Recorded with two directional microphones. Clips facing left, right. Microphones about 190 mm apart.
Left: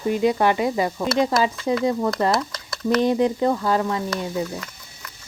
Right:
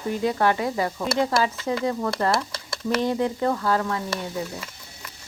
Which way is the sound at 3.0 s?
15° left (ahead or behind).